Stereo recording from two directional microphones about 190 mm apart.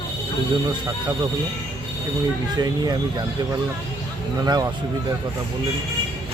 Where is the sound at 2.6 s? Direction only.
20° right (ahead or behind).